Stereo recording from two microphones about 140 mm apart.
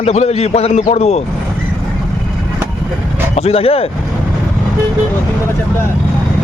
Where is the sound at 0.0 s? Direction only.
50° left (ahead or behind).